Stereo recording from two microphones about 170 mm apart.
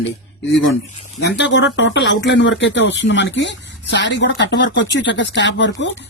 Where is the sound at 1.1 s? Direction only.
90° left.